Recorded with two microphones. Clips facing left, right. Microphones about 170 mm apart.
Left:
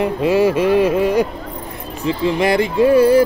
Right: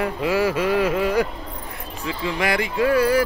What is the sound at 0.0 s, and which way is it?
Speech, 25° left (ahead or behind).